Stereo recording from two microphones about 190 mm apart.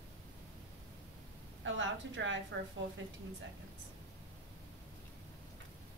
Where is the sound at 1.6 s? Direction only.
85° right.